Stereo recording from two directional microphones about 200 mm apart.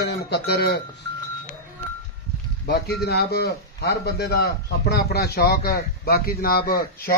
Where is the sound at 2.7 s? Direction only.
55° left (ahead or behind).